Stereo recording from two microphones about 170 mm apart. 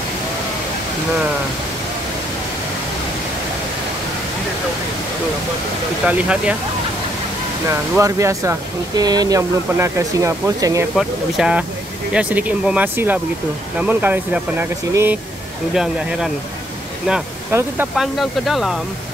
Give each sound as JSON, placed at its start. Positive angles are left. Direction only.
{"t": 6.0, "sound": "speech", "side_deg": -5}
{"t": 8.0, "sound": "speech", "side_deg": -20}
{"t": 11.0, "sound": "speech", "side_deg": -5}
{"t": 17.9, "sound": "speech", "side_deg": 0}